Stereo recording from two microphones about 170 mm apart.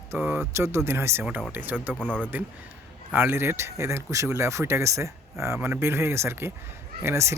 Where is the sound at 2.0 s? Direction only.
5° left (ahead or behind).